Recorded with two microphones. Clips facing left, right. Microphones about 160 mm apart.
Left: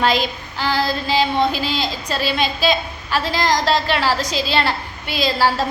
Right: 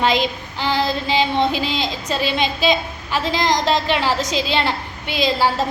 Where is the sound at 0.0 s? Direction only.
20° right (ahead or behind).